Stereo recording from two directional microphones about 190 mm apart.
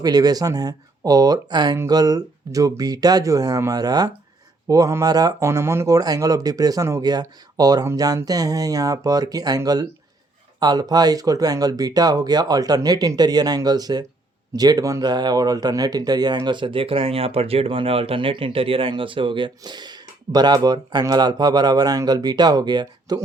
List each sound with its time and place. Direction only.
0.0 s speech: 20° right (ahead or behind)